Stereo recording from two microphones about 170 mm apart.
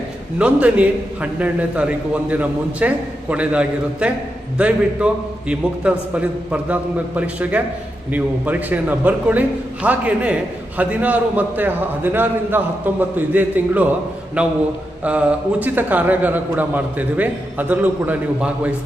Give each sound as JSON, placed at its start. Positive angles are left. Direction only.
{"t": 0.3, "sound": "a man's voice", "side_deg": -5}